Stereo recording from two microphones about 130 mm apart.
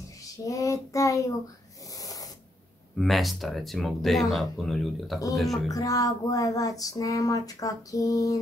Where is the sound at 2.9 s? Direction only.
Centre (ahead or behind).